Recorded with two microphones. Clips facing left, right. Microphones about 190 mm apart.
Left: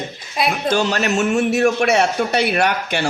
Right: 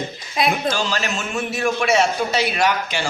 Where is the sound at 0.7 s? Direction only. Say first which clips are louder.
Left 6 dB; 60° left (ahead or behind).